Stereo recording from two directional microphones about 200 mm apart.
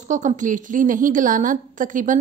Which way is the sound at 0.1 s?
35° right (ahead or behind).